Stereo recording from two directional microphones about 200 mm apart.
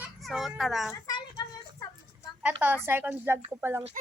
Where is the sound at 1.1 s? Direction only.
20° left (ahead or behind).